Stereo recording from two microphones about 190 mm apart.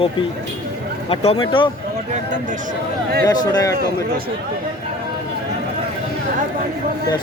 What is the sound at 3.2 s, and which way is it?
Speech, 20° left (ahead or behind).